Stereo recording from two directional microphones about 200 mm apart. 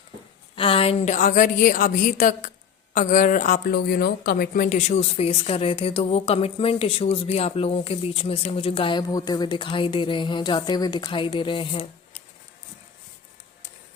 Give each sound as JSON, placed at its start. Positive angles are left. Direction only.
{"t": 0.5, "sound": "a woman's voice", "side_deg": 25}